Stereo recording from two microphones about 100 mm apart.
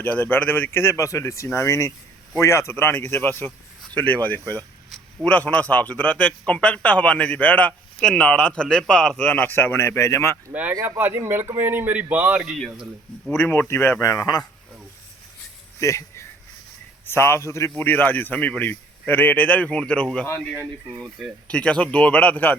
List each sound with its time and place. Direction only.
0.0 s a man's voice: 20° left (ahead or behind)
10.5 s speech: 15° right (ahead or behind)
12.4 s speech: centre (ahead or behind)
13.3 s a man's voice: 20° left (ahead or behind); by 14.4 s 35° left (ahead or behind)
15.8 s a man's voice: 30° left (ahead or behind); by 20.1 s 10° left (ahead or behind)
20.1 s a man's voice: 20° left (ahead or behind)
21.4 s a man's voice: 10° left (ahead or behind)